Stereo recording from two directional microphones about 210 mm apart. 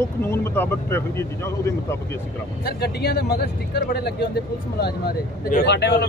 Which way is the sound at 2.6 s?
50° left (ahead or behind).